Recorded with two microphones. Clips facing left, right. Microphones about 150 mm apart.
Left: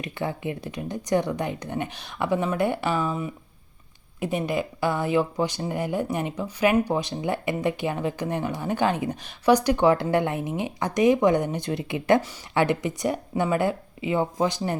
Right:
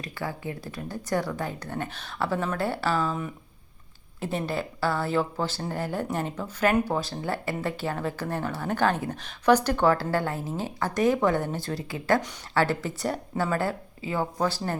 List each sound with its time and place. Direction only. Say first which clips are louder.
0.0 s speech: left 4 dB; 20° left (ahead or behind)